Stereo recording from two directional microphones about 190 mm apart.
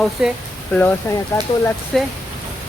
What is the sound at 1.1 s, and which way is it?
Speech, 10° left (ahead or behind).